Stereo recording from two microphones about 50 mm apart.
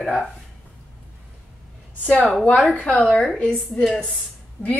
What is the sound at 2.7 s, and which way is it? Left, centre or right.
Speech, left.